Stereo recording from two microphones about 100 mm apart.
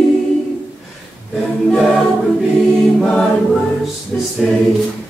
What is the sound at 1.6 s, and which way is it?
A capella, centre (ahead or behind).